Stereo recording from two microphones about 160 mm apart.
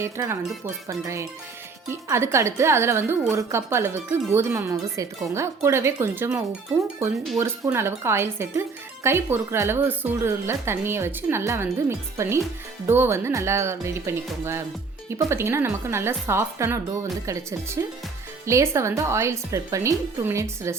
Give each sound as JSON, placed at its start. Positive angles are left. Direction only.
{"t": 0.0, "sound": "a woman's voice", "side_deg": -15}
{"t": 0.6, "sound": "music", "side_deg": -20}
{"t": 1.9, "sound": "a woman's voice", "side_deg": -15}